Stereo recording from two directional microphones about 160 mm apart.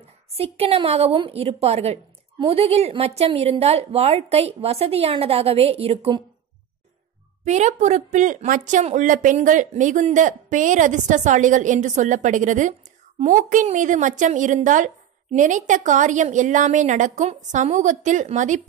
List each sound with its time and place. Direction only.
0.3 s a woman's voice: 40° right (ahead or behind)
7.4 s a woman's voice: 45° right (ahead or behind)